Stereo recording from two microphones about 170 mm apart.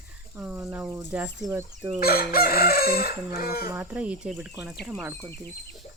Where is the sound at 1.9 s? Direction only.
60° left (ahead or behind).